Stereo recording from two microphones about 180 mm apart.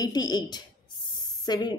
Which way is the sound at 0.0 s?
20° left (ahead or behind).